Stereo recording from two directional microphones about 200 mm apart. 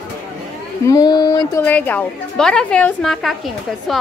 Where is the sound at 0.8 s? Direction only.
20° left (ahead or behind).